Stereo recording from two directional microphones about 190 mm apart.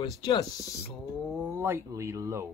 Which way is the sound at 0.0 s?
20° left (ahead or behind).